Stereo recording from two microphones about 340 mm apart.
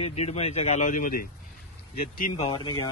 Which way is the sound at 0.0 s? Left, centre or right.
Centre.